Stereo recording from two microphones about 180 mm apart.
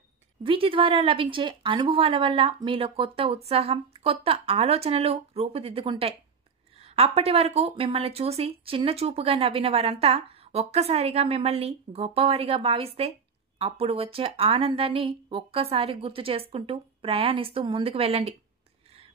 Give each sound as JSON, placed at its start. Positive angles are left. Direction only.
{"t": 0.4, "sound": "speech", "side_deg": -30}